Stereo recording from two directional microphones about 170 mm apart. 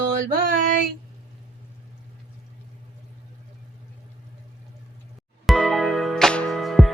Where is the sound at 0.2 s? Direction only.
60° right (ahead or behind).